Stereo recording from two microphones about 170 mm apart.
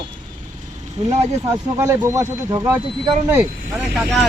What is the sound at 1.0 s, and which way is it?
Speech, 15° right (ahead or behind).